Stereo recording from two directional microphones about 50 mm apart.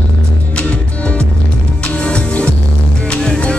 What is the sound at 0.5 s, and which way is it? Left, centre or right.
Music, left.